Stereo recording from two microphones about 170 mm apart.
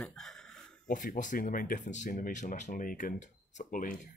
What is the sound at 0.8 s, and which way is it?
Speech, 50° left (ahead or behind).